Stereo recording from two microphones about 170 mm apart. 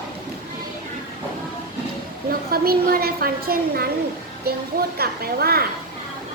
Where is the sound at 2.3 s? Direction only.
60° right (ahead or behind).